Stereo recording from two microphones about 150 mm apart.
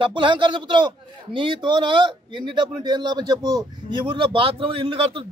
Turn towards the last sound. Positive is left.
turn(degrees=-35)  # may be behind; listen again after turning